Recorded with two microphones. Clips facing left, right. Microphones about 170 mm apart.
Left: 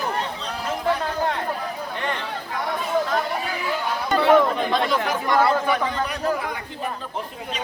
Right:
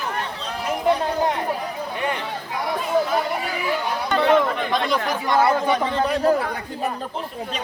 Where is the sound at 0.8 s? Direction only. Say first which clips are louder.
Right 4 dB; 20° right (ahead or behind).